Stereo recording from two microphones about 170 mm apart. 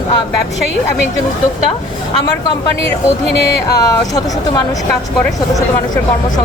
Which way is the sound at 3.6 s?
20° left (ahead or behind).